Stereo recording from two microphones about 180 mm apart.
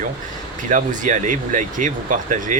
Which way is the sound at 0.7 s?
45° right (ahead or behind).